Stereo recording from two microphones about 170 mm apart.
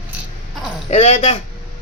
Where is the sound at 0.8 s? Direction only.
40° left (ahead or behind).